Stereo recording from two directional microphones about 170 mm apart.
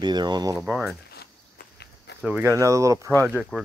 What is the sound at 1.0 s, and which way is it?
Walk, 70° left (ahead or behind).